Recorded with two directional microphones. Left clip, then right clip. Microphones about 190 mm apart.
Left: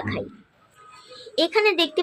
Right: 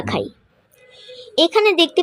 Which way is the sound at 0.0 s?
40° right (ahead or behind).